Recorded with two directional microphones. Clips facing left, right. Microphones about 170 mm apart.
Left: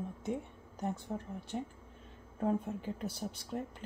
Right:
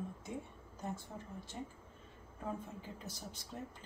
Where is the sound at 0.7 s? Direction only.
65° left (ahead or behind).